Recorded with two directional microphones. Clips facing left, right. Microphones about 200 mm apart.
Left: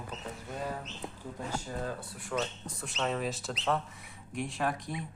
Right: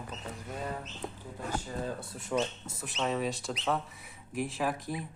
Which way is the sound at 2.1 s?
20° right (ahead or behind).